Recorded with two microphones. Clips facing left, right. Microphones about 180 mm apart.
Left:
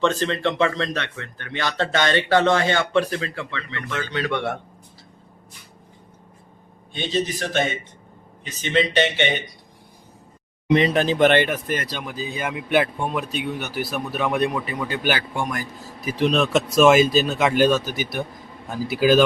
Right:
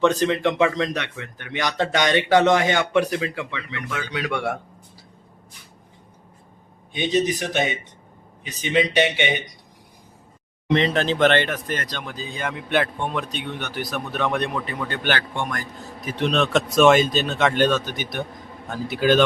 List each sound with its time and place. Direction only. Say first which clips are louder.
0.0 s a man's voice: right 2 dB; 15° right (ahead or behind)
6.9 s a man's voice: right 3 dB; 15° right (ahead or behind)
10.8 s speech: left 2 dB; 10° left (ahead or behind)